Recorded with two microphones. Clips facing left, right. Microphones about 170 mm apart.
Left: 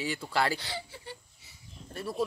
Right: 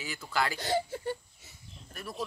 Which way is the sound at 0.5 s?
45° right (ahead or behind).